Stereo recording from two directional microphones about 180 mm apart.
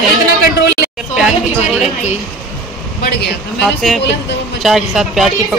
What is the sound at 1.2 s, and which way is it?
Speech, centre (ahead or behind).